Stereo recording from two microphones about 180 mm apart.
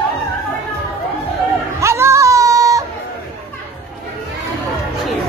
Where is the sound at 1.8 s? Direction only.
15° right (ahead or behind).